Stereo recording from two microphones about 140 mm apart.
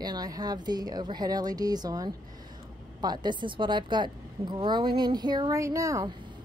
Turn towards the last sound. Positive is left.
turn(degrees=-25)  # may be behind; listen again after turning